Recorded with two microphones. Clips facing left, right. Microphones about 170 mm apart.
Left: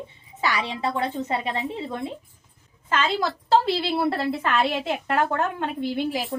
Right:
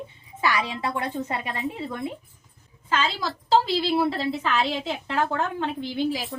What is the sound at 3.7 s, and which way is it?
Speech, 55° left (ahead or behind).